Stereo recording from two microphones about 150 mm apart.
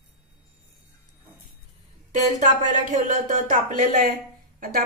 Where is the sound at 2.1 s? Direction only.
55° right (ahead or behind); by 4.8 s 80° right.